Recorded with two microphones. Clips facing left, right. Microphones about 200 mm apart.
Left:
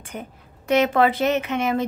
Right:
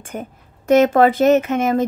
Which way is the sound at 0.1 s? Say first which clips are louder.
Right 5 dB; 45° right (ahead or behind).